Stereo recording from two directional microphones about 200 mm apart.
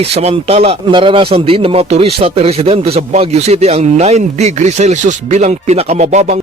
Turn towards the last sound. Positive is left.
turn(degrees=-35)  # may be behind; listen again after turning